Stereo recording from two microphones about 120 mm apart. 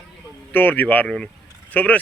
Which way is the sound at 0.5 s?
15° left (ahead or behind).